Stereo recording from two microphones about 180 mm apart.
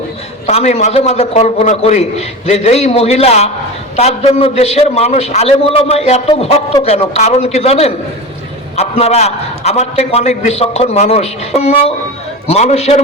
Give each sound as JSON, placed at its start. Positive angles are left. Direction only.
{"t": 0.4, "sound": "a man's voice", "side_deg": 35}